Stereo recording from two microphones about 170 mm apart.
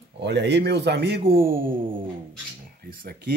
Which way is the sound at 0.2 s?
90° right.